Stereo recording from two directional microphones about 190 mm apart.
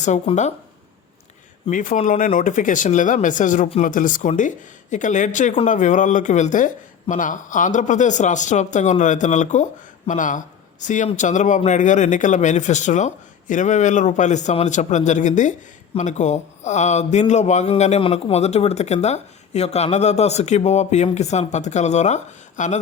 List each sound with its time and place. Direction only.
0.0 s speech: 40° left (ahead or behind)
1.7 s speech: 45° left (ahead or behind)